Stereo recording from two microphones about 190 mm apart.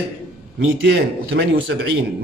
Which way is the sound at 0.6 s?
65° right (ahead or behind).